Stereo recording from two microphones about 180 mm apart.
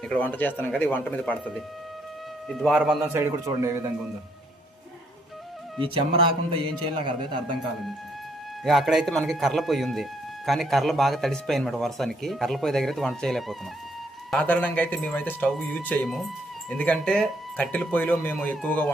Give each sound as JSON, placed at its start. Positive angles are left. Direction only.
{"t": 0.1, "sound": "a man's voice", "side_deg": 10}
{"t": 5.8, "sound": "a man's voice", "side_deg": -30}
{"t": 8.6, "sound": "speech", "side_deg": 0}